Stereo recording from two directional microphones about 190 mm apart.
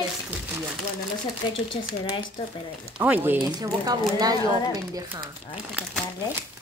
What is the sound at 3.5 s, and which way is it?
Speech, 20° right (ahead or behind).